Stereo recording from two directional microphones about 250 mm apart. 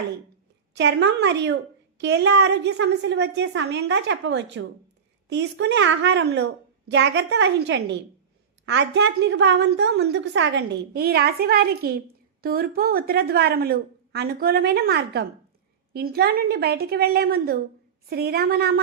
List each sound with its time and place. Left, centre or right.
0.7 s a woman's voice: right